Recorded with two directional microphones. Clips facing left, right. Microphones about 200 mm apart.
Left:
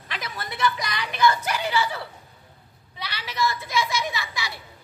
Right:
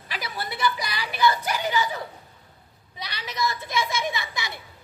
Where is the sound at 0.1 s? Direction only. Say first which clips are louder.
Right 1 dB; 10° right (ahead or behind).